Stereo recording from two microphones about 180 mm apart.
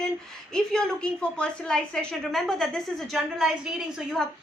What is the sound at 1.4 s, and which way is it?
A woman's voice, 5° left (ahead or behind).